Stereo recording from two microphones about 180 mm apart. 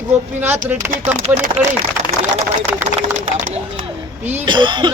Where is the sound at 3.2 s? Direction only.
40° right (ahead or behind).